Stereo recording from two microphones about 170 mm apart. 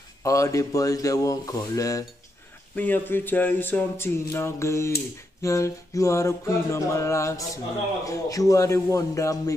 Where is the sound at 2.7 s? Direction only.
10° left (ahead or behind).